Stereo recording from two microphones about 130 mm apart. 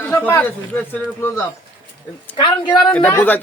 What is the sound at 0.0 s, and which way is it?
Speech, 15° left (ahead or behind).